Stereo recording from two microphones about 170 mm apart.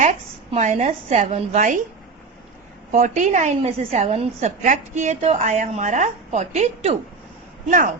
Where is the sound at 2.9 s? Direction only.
45° right (ahead or behind).